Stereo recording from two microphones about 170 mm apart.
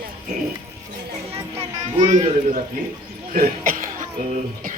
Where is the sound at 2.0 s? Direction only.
45° right (ahead or behind).